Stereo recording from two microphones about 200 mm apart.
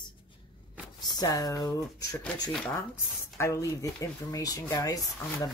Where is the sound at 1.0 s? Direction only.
20° left (ahead or behind).